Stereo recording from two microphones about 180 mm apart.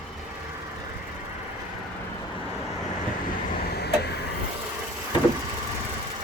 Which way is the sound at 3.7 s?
65° left (ahead or behind).